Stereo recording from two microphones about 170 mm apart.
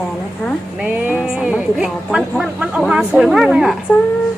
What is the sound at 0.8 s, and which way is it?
Speech, 10° right (ahead or behind).